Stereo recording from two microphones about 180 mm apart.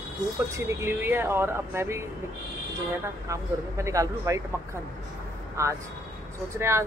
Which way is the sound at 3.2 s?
15° right (ahead or behind).